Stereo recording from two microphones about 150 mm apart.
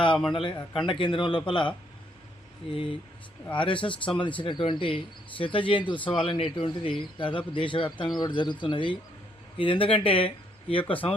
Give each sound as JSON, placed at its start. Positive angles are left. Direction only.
{"t": 0.3, "sound": "speech", "side_deg": 35}